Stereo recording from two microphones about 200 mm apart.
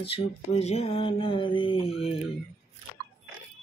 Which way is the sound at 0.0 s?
30° left (ahead or behind).